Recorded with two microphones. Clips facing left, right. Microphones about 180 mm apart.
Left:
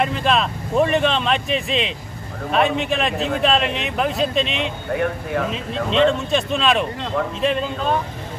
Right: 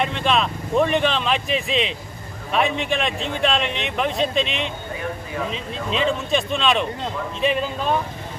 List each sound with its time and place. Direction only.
0.0 s speech: centre (ahead or behind)
4.9 s speech: 65° left (ahead or behind)
5.5 s speech: centre (ahead or behind)